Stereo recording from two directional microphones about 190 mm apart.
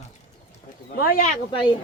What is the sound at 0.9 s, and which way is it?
Speech, 50° left (ahead or behind).